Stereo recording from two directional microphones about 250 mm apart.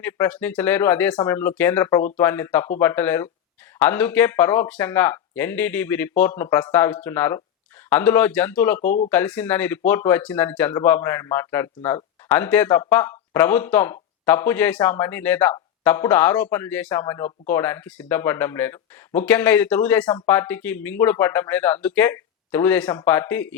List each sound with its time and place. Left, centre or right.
0.0 s speech: centre
8.8 s speech: left
9.0 s speech: centre